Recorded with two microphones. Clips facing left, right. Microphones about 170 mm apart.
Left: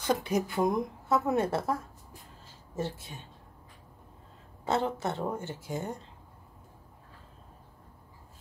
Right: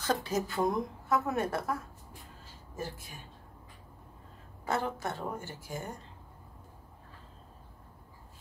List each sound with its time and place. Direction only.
0.0 s a woman's voice: 15° left (ahead or behind)
4.6 s a woman's voice: 25° left (ahead or behind)